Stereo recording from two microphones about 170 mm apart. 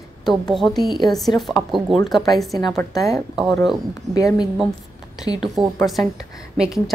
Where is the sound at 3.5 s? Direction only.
20° left (ahead or behind).